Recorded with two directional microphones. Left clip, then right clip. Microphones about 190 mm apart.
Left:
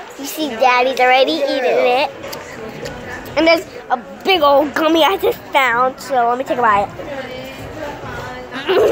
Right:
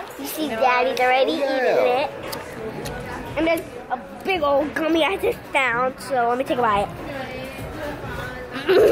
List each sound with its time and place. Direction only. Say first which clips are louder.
0.2 s a woman's voice: left 5 dB; 15° left (ahead or behind)
1.6 s speech: left 3 dB; 15° right (ahead or behind)
3.3 s a woman's voice: left 9 dB; 25° left (ahead or behind); by 6.9 s 5° right (ahead or behind)
8.5 s speech: left 2 dB; 10° right (ahead or behind)